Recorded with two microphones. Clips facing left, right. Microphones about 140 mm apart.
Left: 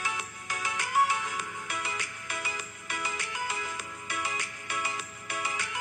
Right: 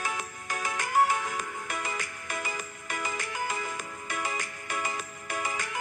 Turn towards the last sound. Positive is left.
turn(degrees=-45)  # may be behind; listen again after turning